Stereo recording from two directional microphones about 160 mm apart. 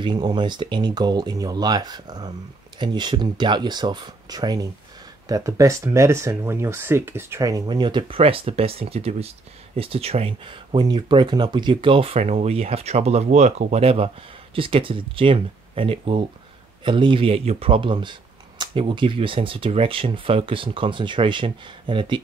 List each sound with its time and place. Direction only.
0.0 s speech: 30° right (ahead or behind)